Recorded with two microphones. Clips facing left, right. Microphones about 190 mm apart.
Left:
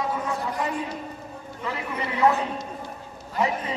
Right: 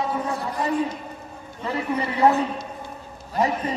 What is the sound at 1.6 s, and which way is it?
Speech, 35° right (ahead or behind).